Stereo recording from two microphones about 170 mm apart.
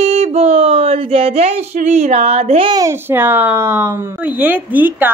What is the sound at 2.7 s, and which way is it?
Speech, 20° right (ahead or behind).